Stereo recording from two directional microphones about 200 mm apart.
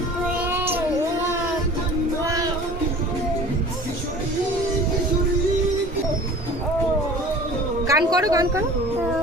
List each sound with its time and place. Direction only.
2.2 s music: 15° right (ahead or behind)
7.9 s speech: 15° right (ahead or behind)